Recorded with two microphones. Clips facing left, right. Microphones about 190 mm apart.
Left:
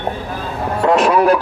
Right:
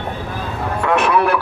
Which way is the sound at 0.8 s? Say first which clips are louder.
Left 4 dB; 35° left (ahead or behind).